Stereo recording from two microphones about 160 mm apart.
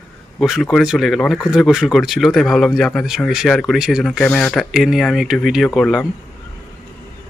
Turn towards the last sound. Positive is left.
turn(degrees=5)  # may be behind; listen again after turning